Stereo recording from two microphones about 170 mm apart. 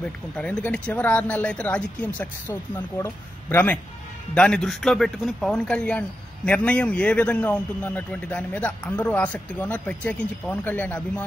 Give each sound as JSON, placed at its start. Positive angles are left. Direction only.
{"t": 0.0, "sound": "speech", "side_deg": 5}